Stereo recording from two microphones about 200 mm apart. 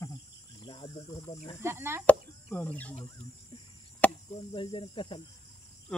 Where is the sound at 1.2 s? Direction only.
10° left (ahead or behind).